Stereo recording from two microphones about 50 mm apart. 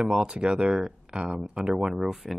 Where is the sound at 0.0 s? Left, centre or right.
Centre.